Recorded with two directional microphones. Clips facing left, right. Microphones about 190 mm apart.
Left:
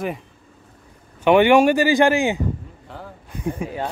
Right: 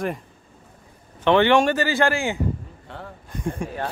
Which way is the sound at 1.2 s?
10° left (ahead or behind).